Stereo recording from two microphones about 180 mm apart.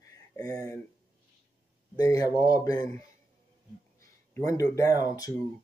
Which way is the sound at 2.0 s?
20° left (ahead or behind).